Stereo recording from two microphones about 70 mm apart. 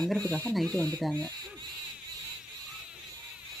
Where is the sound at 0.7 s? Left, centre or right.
Right.